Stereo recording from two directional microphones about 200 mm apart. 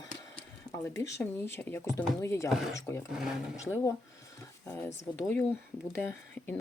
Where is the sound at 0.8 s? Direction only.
10° left (ahead or behind).